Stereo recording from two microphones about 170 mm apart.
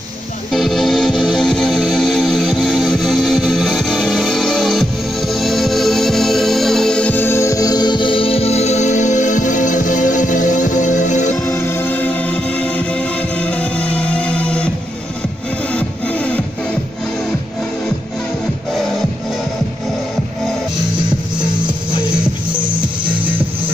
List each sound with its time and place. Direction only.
0.5 s music: centre (ahead or behind); by 11.3 s 45° left (ahead or behind)
11.4 s music: 15° left (ahead or behind)
15.7 s music: 5° left (ahead or behind)
23.0 s music: 10° right (ahead or behind)